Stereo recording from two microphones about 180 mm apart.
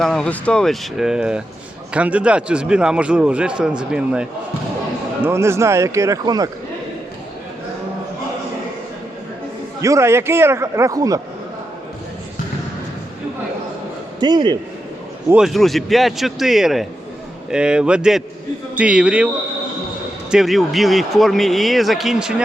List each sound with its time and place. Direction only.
0.0 s a man's voice: 5° left (ahead or behind); by 6.5 s 20° right (ahead or behind)
9.8 s a man's voice: 15° right (ahead or behind)
14.2 s a man's voice: 25° right (ahead or behind)
15.3 s a man's voice: 5° right (ahead or behind)
20.3 s a man's voice: centre (ahead or behind)